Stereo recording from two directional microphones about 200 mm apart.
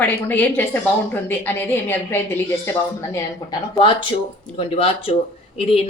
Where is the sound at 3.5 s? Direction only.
25° left (ahead or behind).